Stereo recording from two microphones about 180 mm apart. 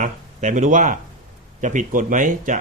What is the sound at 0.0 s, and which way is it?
Speech, 45° right (ahead or behind).